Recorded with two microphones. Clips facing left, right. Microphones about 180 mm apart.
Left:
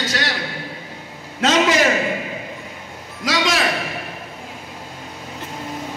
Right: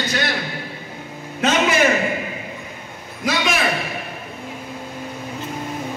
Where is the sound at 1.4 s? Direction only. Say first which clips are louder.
Left 1 dB; 90° left.